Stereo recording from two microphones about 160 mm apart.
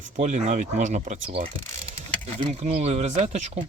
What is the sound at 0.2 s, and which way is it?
Speech, 45° right (ahead or behind).